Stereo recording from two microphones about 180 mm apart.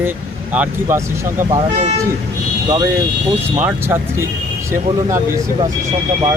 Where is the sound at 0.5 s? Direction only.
10° right (ahead or behind).